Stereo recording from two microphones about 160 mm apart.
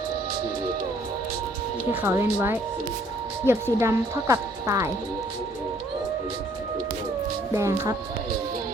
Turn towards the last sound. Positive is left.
turn(degrees=-20)  # may be behind; listen again after turning